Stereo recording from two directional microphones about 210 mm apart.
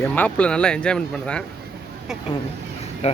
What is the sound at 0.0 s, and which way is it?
Speech, 5° left (ahead or behind).